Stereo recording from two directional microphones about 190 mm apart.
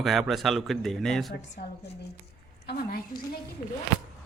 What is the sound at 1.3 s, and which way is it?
A woman's voice, 55° left (ahead or behind).